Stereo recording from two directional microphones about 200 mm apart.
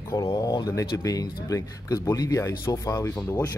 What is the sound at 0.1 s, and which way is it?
Speech, 20° left (ahead or behind).